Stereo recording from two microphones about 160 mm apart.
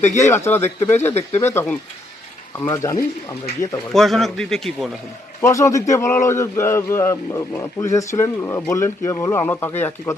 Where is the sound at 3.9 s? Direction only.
Centre (ahead or behind).